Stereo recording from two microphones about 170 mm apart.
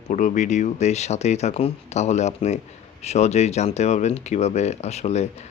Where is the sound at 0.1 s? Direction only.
45° left (ahead or behind).